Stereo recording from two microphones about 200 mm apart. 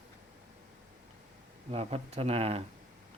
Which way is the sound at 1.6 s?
30° right (ahead or behind).